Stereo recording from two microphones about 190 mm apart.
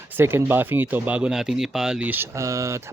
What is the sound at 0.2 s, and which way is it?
Speech, 10° right (ahead or behind).